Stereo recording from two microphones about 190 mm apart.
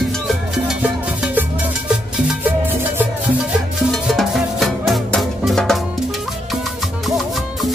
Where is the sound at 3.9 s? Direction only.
Centre (ahead or behind).